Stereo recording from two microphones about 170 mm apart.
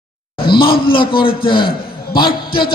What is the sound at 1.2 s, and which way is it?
Speech, 30° left (ahead or behind).